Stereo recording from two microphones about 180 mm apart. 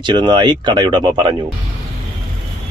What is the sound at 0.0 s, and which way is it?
Speech, 25° right (ahead or behind).